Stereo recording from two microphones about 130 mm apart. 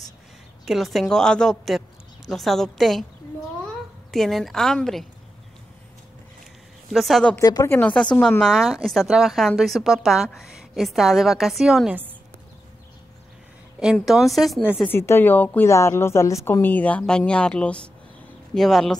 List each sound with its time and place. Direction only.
0.7 s a woman's voice: centre (ahead or behind)
6.9 s a woman's voice: centre (ahead or behind)
7.3 s speech: 25° left (ahead or behind)
7.7 s a woman's voice: 10° left (ahead or behind)
13.9 s a woman's voice: centre (ahead or behind)
14.9 s a woman's voice: 20° left (ahead or behind); by 18.9 s centre (ahead or behind)